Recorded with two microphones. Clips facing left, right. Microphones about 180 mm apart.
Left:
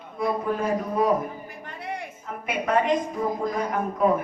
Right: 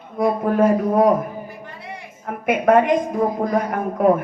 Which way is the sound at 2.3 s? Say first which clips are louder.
Right 10 dB; 55° right (ahead or behind).